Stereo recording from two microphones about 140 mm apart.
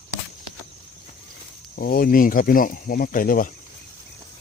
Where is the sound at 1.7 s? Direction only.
90° left.